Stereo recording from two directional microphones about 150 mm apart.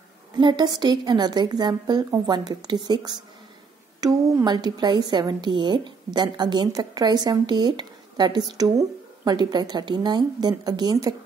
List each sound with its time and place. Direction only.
0.4 s a woman's voice: 30° right (ahead or behind)